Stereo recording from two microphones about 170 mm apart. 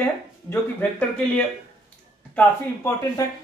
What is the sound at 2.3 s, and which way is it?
Speech, 15° left (ahead or behind).